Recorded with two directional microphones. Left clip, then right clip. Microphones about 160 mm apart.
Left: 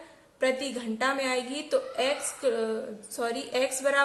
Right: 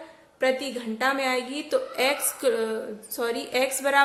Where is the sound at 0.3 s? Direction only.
20° right (ahead or behind).